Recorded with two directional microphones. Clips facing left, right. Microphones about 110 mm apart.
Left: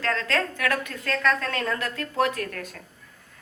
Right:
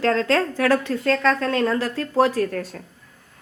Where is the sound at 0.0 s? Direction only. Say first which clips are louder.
Right 7 dB; 25° right (ahead or behind).